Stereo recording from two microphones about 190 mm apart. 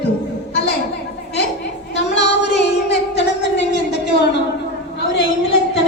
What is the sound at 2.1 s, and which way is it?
Music, 65° left (ahead or behind).